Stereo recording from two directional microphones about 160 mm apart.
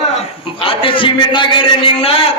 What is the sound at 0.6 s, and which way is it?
A man's voice, 35° left (ahead or behind).